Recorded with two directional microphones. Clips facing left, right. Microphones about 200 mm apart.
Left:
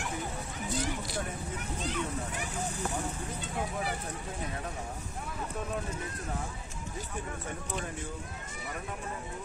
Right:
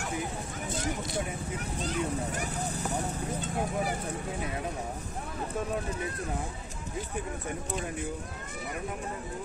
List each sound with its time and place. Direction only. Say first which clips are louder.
1.9 s speech: right 4 dB; 40° right (ahead or behind)